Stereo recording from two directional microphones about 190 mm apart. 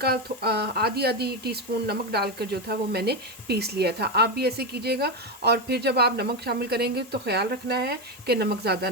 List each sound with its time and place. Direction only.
0.0 s speech: 55° right (ahead or behind)